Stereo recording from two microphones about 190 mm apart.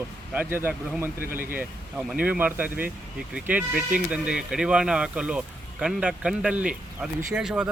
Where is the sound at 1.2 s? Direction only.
50° right (ahead or behind).